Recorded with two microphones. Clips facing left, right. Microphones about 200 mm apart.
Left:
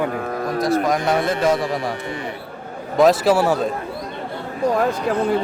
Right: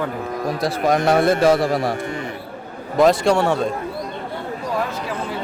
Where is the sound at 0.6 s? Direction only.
30° right (ahead or behind).